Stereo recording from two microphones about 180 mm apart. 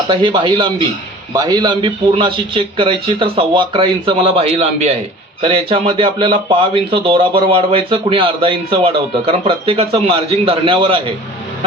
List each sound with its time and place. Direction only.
0.1 s speech: 25° right (ahead or behind)